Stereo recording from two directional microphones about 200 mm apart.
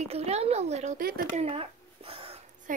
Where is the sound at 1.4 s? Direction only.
30° right (ahead or behind).